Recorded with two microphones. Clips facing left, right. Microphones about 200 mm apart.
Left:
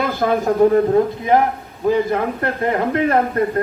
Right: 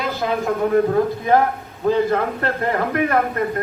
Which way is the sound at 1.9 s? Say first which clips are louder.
Left 1 dB; 15° left (ahead or behind).